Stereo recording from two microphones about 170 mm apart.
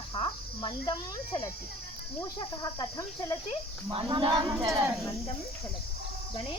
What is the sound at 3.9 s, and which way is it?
Speech, 30° right (ahead or behind).